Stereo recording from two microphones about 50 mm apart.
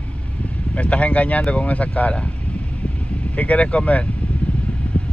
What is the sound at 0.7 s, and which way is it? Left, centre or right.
Speech, left.